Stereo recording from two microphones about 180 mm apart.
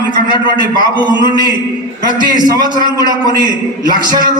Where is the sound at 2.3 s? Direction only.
25° right (ahead or behind).